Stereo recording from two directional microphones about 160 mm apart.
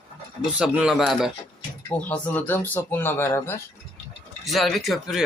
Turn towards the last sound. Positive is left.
turn(degrees=0)  # may be behind; listen again after turning